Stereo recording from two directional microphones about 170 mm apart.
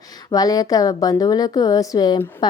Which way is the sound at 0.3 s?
20° left (ahead or behind).